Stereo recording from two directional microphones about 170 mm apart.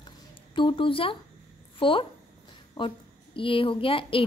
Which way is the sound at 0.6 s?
30° left (ahead or behind).